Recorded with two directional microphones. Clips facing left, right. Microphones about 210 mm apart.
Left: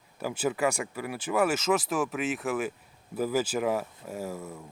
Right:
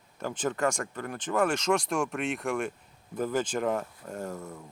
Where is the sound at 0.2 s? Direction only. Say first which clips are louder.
Left 1 dB; 10° left (ahead or behind).